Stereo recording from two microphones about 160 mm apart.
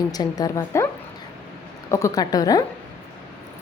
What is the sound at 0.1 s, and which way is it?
Speech, 25° left (ahead or behind).